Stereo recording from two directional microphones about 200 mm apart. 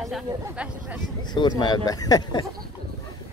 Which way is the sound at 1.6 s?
20° left (ahead or behind).